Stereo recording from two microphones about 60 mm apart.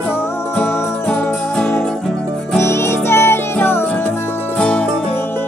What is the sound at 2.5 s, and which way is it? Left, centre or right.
Music, left.